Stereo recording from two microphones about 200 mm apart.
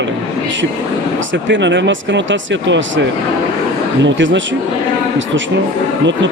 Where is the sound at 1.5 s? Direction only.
65° right (ahead or behind).